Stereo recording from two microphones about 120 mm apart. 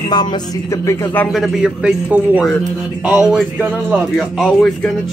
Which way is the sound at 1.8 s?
10° right (ahead or behind).